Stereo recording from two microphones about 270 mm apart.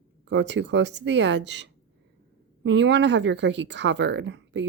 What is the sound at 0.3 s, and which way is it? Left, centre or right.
Speech, right.